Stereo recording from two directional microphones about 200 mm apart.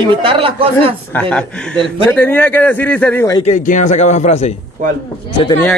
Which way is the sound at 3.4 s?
35° left (ahead or behind).